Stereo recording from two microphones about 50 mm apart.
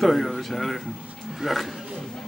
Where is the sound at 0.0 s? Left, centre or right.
Centre.